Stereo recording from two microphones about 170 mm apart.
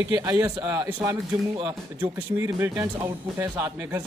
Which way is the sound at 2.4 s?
20° right (ahead or behind).